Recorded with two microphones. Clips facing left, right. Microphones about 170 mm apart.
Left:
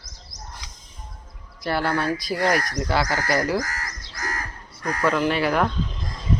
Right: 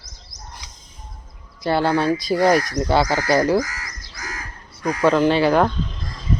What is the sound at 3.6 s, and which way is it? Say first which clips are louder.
Crow: left 1 dB; 45° left (ahead or behind).